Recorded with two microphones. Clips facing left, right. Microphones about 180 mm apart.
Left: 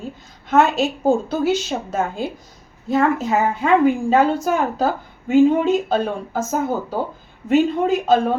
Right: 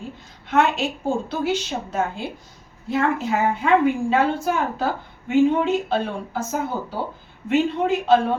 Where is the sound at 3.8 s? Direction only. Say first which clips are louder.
Left 4 dB; 40° left (ahead or behind).